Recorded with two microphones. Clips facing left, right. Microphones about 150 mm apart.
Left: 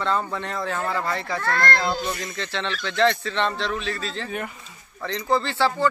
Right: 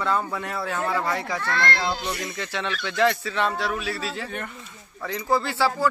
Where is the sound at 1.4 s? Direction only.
45° left (ahead or behind).